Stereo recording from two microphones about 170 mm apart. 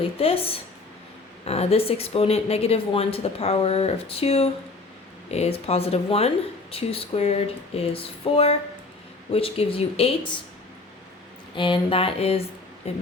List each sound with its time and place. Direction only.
0.0 s speech: 35° left (ahead or behind)
11.5 s speech: 30° left (ahead or behind)